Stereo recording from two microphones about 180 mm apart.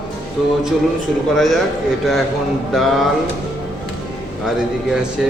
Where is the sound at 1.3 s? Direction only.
Centre (ahead or behind).